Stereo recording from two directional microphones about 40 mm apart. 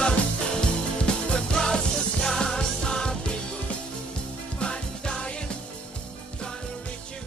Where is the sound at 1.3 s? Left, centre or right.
Left.